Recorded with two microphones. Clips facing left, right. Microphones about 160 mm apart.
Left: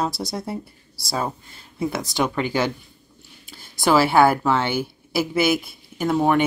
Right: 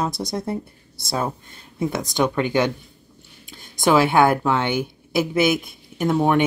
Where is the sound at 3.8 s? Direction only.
5° left (ahead or behind).